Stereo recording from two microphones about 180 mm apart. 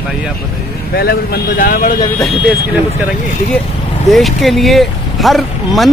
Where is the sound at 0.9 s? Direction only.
60° left (ahead or behind).